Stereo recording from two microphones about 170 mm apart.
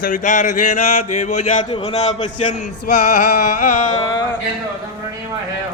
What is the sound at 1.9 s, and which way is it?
Music, 35° left (ahead or behind).